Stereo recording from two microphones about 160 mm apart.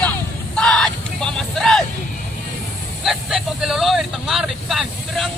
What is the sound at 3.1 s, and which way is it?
Speech, 5° right (ahead or behind).